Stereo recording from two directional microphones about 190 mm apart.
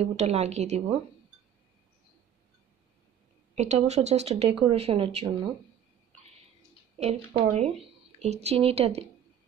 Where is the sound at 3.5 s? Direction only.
35° right (ahead or behind).